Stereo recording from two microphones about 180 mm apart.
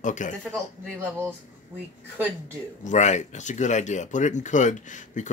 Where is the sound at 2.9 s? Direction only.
40° left (ahead or behind).